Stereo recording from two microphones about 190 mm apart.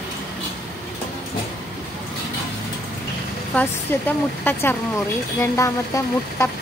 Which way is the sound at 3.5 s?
10° left (ahead or behind).